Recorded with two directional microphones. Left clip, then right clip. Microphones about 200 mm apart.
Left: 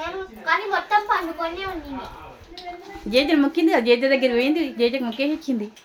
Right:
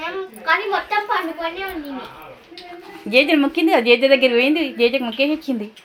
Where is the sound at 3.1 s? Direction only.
Centre (ahead or behind).